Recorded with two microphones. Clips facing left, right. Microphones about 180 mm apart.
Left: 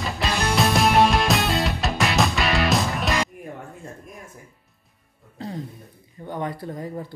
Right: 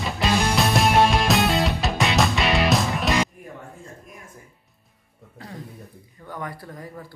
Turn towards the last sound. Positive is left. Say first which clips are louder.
# left 5 dB
turn(degrees=25)  # may be behind; listen again after turning